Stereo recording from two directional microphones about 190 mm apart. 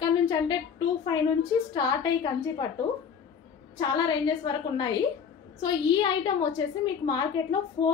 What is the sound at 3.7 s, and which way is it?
A woman's voice, 20° left (ahead or behind).